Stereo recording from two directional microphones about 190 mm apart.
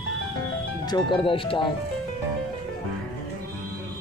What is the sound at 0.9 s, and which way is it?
Speech, 25° left (ahead or behind).